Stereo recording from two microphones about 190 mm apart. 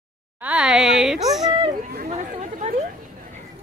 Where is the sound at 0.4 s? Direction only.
5° right (ahead or behind).